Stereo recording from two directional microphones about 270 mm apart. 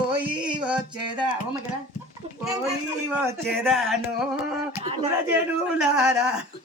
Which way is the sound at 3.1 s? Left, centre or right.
Centre.